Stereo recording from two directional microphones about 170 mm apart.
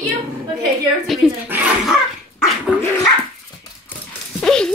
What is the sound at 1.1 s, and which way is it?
Speech, centre (ahead or behind).